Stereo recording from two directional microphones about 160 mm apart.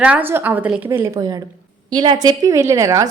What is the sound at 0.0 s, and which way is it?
A woman's voice, 10° right (ahead or behind).